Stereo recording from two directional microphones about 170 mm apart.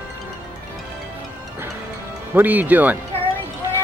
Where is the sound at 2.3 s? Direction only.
10° right (ahead or behind).